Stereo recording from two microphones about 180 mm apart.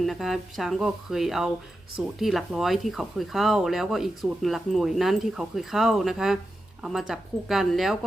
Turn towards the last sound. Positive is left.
turn(degrees=0)  # may be behind; listen again after turning